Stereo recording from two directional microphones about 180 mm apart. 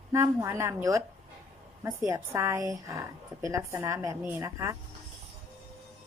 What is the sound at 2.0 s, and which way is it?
A woman's voice, 15° right (ahead or behind).